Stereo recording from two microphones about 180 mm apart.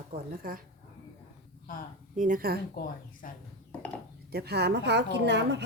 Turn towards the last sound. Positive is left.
turn(degrees=-70)  # may be behind; listen again after turning